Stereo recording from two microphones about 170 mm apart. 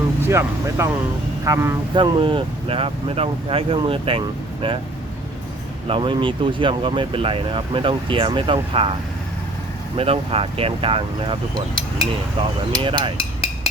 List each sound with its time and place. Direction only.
0.2 s speech: 15° right (ahead or behind)
2.0 s speech: 30° right (ahead or behind)
5.9 s speech: 30° right (ahead or behind)
10.0 s speech: 35° right (ahead or behind)
12.7 s cutlery: 30° right (ahead or behind)